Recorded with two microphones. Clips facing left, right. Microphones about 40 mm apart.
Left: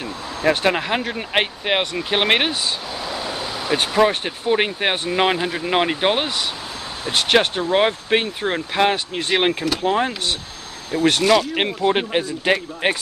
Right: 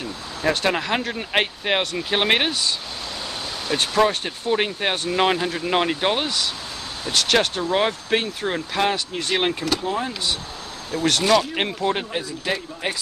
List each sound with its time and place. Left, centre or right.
0.0 s vehicle: left
0.9 s speech: centre
9.8 s speech: left
10.9 s speech: left
11.9 s speech: left